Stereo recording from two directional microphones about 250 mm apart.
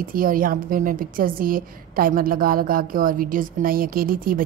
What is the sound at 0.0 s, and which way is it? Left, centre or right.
A woman's voice, right.